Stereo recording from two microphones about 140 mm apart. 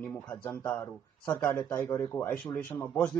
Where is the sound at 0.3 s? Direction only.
15° left (ahead or behind).